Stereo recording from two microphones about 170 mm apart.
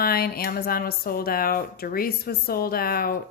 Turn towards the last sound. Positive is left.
turn(degrees=60)  # may be behind; listen again after turning